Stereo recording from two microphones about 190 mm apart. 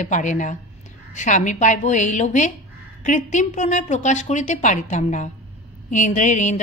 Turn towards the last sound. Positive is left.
turn(degrees=40)  # may be behind; listen again after turning